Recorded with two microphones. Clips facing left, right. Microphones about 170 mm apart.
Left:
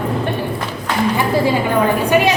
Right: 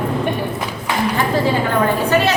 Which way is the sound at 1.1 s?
10° left (ahead or behind).